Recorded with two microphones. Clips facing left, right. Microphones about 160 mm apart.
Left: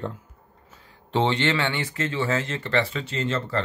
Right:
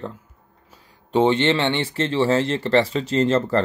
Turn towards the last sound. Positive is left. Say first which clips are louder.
# right 8 dB
turn(degrees=-40)  # may be behind; listen again after turning